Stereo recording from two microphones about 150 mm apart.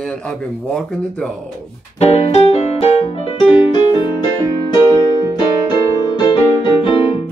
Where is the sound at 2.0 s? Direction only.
45° left (ahead or behind).